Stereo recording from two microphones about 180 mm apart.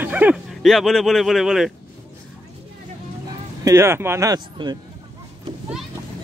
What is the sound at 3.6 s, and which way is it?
Speech, 15° right (ahead or behind).